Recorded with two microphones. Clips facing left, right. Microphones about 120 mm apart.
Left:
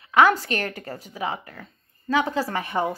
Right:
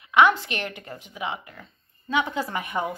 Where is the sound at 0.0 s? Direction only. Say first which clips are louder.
Left 1 dB; 40° left (ahead or behind).